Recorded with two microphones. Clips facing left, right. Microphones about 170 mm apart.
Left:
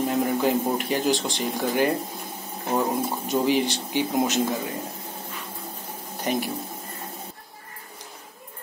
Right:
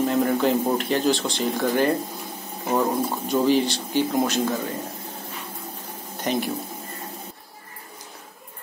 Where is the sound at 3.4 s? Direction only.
15° left (ahead or behind).